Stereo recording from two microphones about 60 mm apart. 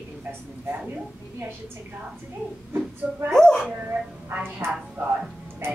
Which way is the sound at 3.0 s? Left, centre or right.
Centre.